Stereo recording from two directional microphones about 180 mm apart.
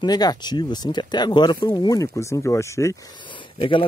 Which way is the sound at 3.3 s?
30° left (ahead or behind).